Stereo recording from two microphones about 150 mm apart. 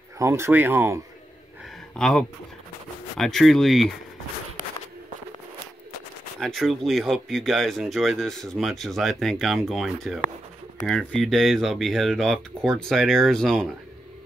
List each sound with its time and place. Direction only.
0.2 s speech: 15° right (ahead or behind)
2.0 s speech: 5° left (ahead or behind)
6.4 s speech: centre (ahead or behind)